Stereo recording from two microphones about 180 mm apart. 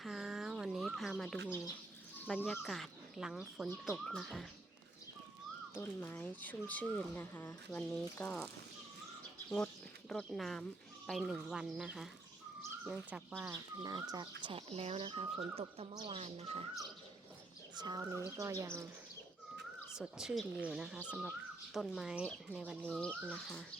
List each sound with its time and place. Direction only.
0.0 s bird: centre (ahead or behind)
1.5 s speech: 15° left (ahead or behind); by 4.4 s centre (ahead or behind)
5.7 s speech: 10° left (ahead or behind)
10.1 s speech: centre (ahead or behind)
13.5 s speech: 20° right (ahead or behind)
14.4 s speech: 30° right (ahead or behind)
17.7 s speech: 20° right (ahead or behind)
20.0 s speech: 5° right (ahead or behind)
22.8 s speech: 5° left (ahead or behind)